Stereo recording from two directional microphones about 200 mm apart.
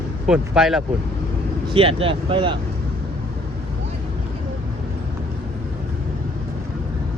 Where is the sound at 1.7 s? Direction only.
30° right (ahead or behind).